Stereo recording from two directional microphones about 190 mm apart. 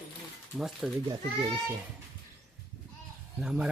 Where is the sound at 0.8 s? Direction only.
5° right (ahead or behind).